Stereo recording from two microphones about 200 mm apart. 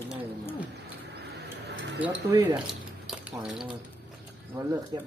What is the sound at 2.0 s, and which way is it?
A man's voice, 10° right (ahead or behind).